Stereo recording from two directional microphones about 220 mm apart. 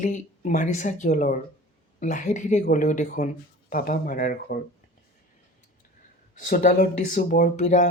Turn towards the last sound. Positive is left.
turn(degrees=35)  # may be behind; listen again after turning